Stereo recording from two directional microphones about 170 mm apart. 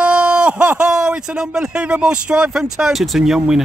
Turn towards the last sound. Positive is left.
turn(degrees=-5)  # may be behind; listen again after turning